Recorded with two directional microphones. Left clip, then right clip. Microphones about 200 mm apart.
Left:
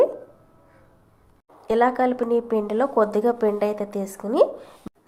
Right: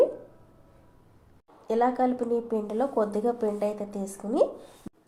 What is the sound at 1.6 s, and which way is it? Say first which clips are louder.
Speech: left 5 dB; 20° left (ahead or behind).